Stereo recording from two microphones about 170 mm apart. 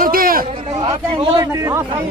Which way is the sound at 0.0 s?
55° right (ahead or behind).